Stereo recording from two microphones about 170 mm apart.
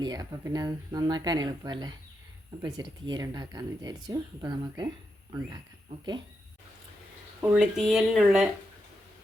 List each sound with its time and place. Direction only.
0.0 s speech: 20° right (ahead or behind)
7.5 s speech: 5° right (ahead or behind)